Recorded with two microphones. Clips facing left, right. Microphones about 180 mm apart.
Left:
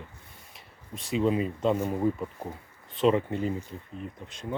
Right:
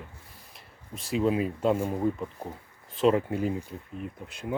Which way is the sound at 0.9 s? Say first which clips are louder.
Even; centre (ahead or behind).